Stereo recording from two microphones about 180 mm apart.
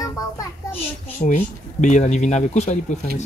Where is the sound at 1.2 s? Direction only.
45° left (ahead or behind).